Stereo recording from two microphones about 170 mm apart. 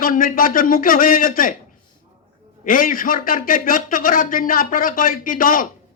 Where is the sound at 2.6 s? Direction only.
55° left (ahead or behind).